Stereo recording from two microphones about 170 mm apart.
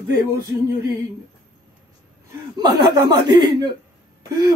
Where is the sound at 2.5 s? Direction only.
25° right (ahead or behind).